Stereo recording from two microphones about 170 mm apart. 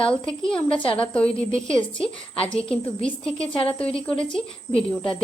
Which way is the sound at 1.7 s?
30° left (ahead or behind).